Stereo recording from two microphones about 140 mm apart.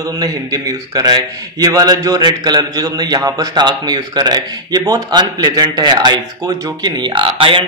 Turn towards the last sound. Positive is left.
turn(degrees=-40)  # may be behind; listen again after turning